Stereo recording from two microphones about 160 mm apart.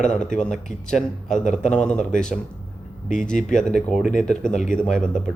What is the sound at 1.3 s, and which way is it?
Speech, 50° left (ahead or behind).